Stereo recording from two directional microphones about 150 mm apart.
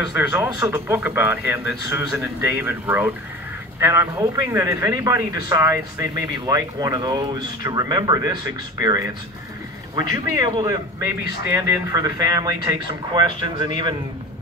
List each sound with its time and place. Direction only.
0.3 s speech: 20° right (ahead or behind)
10.1 s speech: 25° right (ahead or behind)